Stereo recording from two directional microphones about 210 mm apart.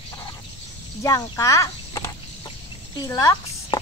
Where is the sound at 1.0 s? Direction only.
15° left (ahead or behind).